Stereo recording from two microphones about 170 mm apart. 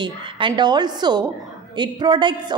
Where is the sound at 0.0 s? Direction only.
30° right (ahead or behind).